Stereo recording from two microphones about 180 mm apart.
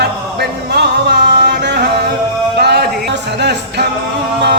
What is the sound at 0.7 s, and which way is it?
Music, 65° right (ahead or behind).